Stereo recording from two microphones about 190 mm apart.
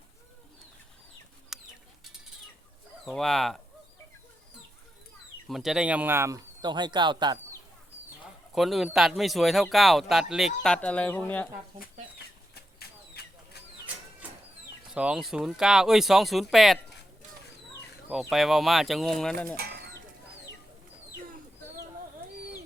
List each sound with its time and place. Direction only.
1.5 s bird: centre (ahead or behind)
3.0 s speech: centre (ahead or behind)
5.5 s speech: centre (ahead or behind); by 7.3 s 25° right (ahead or behind)
8.5 s speech: centre (ahead or behind)
14.8 s speech: 5° right (ahead or behind)
18.1 s speech: centre (ahead or behind)
19.5 s speech: 55° right (ahead or behind)